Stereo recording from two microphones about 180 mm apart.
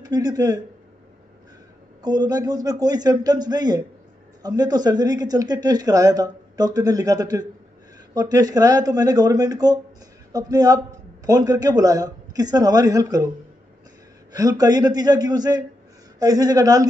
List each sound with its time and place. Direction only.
0.0 s speech: 20° right (ahead or behind)
2.0 s speech: 20° right (ahead or behind)
14.3 s speech: 20° right (ahead or behind)